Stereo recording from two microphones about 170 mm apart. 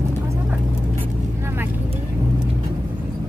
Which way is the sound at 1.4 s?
10° right (ahead or behind).